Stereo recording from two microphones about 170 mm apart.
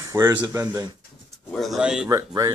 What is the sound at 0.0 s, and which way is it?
Speech, 15° right (ahead or behind).